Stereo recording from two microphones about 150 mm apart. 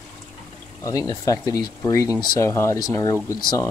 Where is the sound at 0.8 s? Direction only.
25° left (ahead or behind).